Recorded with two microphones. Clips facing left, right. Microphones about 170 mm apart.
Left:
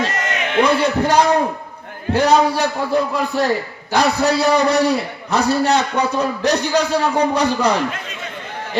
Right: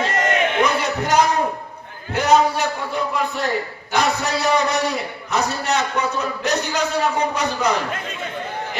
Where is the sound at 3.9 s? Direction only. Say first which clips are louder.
Left 5 dB; 35° left (ahead or behind).